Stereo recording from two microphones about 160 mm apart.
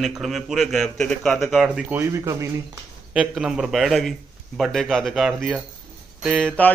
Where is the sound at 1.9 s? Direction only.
20° right (ahead or behind).